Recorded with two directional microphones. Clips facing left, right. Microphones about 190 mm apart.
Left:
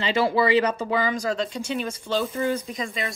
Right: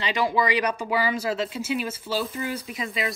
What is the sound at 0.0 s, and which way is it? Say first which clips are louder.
Speech: left 3 dB; 15° right (ahead or behind).